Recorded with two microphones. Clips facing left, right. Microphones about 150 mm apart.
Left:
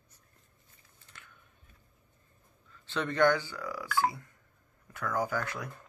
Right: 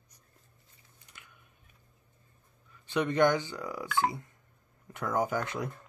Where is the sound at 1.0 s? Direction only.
15° right (ahead or behind).